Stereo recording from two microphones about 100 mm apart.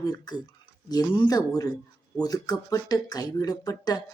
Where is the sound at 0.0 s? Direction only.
40° left (ahead or behind).